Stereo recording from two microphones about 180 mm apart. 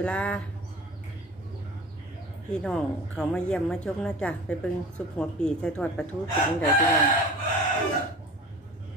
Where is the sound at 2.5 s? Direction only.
5° left (ahead or behind).